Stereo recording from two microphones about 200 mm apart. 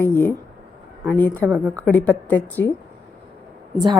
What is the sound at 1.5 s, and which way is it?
Speech, 5° right (ahead or behind).